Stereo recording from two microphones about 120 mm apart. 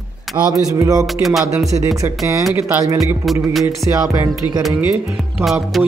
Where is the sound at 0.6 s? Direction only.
30° right (ahead or behind).